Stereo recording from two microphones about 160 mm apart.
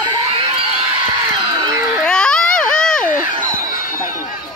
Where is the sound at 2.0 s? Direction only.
5° left (ahead or behind).